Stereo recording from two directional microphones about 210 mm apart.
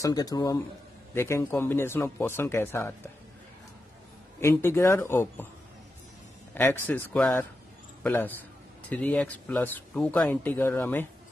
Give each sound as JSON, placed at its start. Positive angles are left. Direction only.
{"t": 0.0, "sound": "speech", "side_deg": 15}
{"t": 4.4, "sound": "speech", "side_deg": 10}
{"t": 6.5, "sound": "speech", "side_deg": 10}